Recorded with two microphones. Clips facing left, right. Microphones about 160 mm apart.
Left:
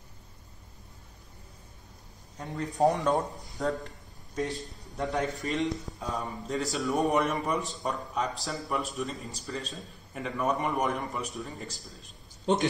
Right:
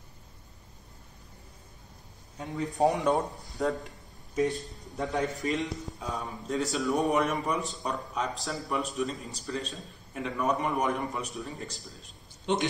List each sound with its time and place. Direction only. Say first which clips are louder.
2.3 s a man's voice: right 1 dB; centre (ahead or behind)
12.5 s a man's voice: left 2 dB; 40° left (ahead or behind)